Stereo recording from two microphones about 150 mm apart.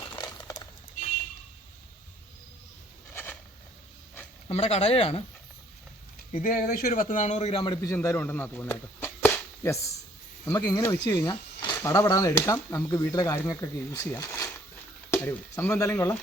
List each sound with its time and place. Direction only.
0.0 s a sound: 25° left (ahead or behind)
4.4 s speech: 45° left (ahead or behind)
6.4 s a man's voice: 70° left (ahead or behind); by 7.8 s 35° left (ahead or behind)
7.8 s speech: 20° left (ahead or behind)
10.4 s speech: 25° left (ahead or behind)